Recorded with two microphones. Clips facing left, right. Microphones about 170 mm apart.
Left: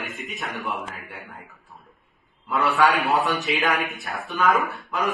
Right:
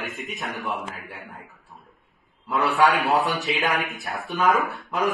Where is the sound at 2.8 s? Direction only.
Centre (ahead or behind).